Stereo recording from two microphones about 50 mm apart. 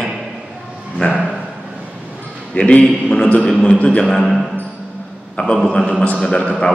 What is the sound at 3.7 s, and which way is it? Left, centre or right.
Speech, left.